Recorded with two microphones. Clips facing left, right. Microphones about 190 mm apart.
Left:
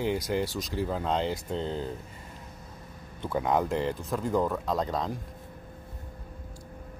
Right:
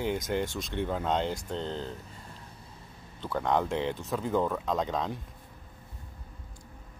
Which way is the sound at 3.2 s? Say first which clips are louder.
Left 1 dB; 10° left (ahead or behind).